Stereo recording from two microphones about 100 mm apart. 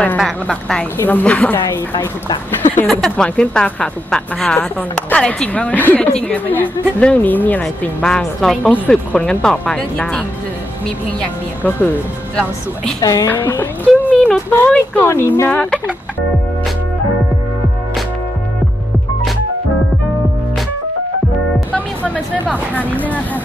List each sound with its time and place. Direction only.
0.2 s a woman's voice: 5° left (ahead or behind)
1.0 s speech: 15° left (ahead or behind)
2.0 s speech: 45° left (ahead or behind)
2.9 s speech: 5° left (ahead or behind)
8.0 s a woman's voice: 5° left (ahead or behind)
11.6 s speech: 15° left (ahead or behind)
13.0 s a woman's voice: 35° left (ahead or behind)
13.3 s speech: 20° left (ahead or behind)
21.7 s music: 15° left (ahead or behind)
22.5 s speech: 15° left (ahead or behind)